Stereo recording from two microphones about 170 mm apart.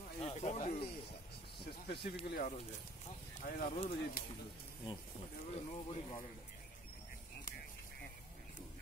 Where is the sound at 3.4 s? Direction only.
40° left (ahead or behind).